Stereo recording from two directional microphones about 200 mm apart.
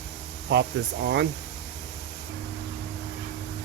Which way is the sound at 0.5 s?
60° right (ahead or behind).